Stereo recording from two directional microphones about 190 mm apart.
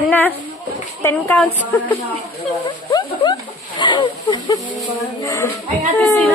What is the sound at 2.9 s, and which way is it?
Speech, 25° left (ahead or behind).